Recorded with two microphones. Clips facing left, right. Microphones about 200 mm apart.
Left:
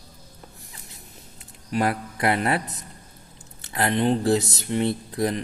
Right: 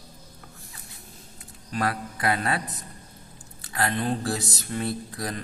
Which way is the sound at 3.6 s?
25° left (ahead or behind).